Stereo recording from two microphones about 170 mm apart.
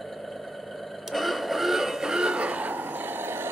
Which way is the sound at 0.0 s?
Centre (ahead or behind).